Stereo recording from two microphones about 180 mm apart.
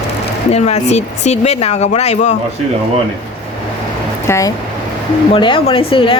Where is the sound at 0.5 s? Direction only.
40° left (ahead or behind).